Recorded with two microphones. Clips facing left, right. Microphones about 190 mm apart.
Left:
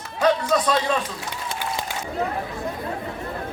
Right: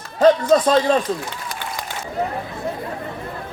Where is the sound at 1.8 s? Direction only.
25° left (ahead or behind).